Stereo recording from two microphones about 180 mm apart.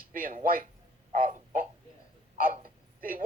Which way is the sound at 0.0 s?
50° right (ahead or behind).